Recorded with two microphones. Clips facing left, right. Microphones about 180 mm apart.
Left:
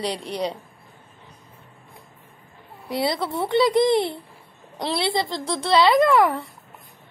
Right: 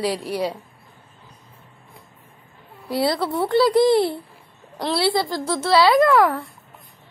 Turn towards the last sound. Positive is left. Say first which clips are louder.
# right 1 dB
turn(degrees=0)  # may be behind; listen again after turning